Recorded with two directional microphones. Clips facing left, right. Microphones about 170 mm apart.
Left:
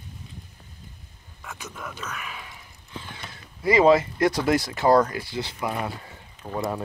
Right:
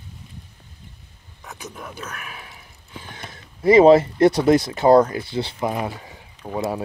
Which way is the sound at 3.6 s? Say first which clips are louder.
Right 6 dB; 25° right (ahead or behind).